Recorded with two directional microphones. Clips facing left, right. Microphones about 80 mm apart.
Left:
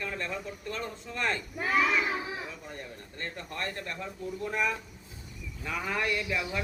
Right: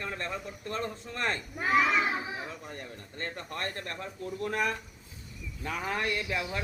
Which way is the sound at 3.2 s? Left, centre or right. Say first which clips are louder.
Right 1 dB; right.